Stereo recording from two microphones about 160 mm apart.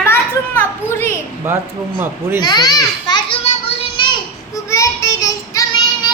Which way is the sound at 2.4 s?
25° left (ahead or behind).